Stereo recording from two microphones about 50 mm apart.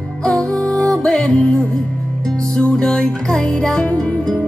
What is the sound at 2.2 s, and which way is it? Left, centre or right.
Music, centre.